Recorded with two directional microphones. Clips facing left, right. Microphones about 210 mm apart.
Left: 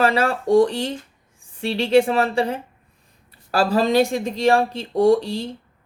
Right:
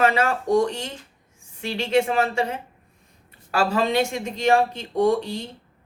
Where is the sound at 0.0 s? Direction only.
35° left (ahead or behind).